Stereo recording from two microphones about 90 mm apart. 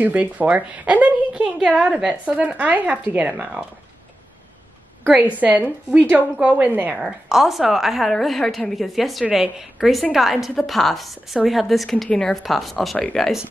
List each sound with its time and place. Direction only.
0.0 s a woman's voice: 20° right (ahead or behind)
5.0 s a woman's voice: 15° right (ahead or behind)
7.0 s a woman's voice: 5° right (ahead or behind)